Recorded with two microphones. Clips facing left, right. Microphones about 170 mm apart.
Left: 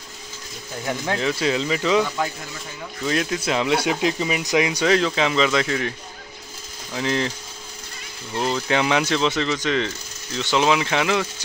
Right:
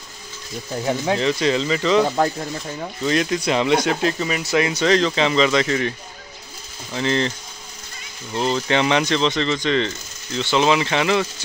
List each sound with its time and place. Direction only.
0.8 s speech: 20° right (ahead or behind)
1.2 s speech: 5° left (ahead or behind)
2.0 s speech: 45° right (ahead or behind)
3.0 s speech: centre (ahead or behind)